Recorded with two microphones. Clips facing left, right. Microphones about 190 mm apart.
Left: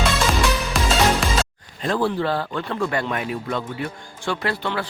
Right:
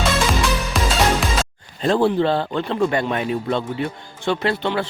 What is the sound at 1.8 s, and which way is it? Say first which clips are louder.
A man's voice: right 5 dB; 25° right (ahead or behind).